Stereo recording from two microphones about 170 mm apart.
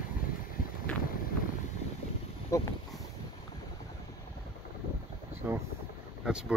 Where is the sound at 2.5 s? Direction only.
15° left (ahead or behind).